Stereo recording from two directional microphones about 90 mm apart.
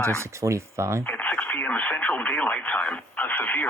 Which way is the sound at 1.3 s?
15° left (ahead or behind).